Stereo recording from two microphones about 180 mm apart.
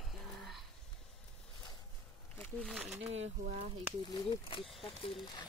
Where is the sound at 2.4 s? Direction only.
5° left (ahead or behind).